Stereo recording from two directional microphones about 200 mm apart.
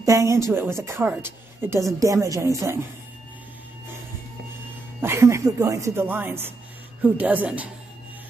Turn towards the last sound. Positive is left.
turn(degrees=-5)  # may be behind; listen again after turning